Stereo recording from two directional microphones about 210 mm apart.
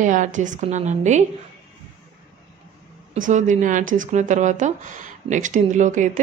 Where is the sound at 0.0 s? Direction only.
35° right (ahead or behind).